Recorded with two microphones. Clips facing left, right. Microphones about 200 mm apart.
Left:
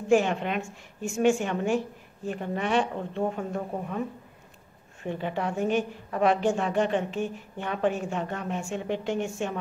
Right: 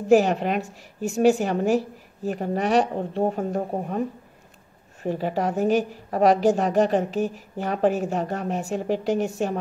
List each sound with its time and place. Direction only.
0.1 s a woman's voice: 40° right (ahead or behind)
5.0 s a woman's voice: 40° right (ahead or behind)